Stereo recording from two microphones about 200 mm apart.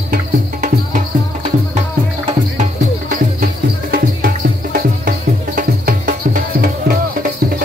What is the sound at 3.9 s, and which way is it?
Music, 45° right (ahead or behind).